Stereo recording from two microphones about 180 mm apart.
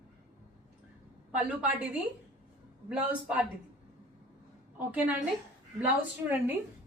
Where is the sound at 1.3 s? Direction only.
5° right (ahead or behind).